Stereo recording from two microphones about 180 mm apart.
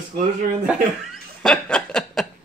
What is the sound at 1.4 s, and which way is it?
Snicker, 5° left (ahead or behind).